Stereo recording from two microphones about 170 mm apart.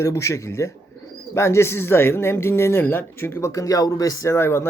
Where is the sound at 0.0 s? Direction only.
20° left (ahead or behind).